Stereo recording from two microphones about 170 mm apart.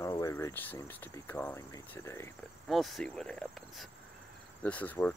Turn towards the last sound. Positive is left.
turn(degrees=10)  # may be behind; listen again after turning